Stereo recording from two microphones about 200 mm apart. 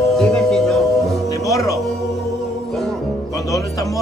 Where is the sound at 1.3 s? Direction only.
15° left (ahead or behind).